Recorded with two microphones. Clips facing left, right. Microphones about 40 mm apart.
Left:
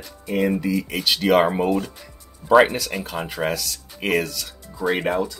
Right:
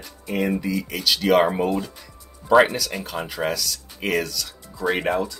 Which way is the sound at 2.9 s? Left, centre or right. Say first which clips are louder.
Left 1 dB; centre.